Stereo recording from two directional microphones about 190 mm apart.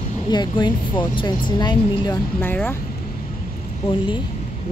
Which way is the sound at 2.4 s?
10° left (ahead or behind).